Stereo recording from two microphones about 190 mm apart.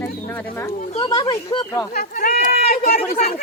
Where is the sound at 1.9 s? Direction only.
50° left (ahead or behind).